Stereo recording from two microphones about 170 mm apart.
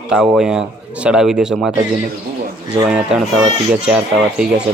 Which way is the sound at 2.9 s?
5° right (ahead or behind).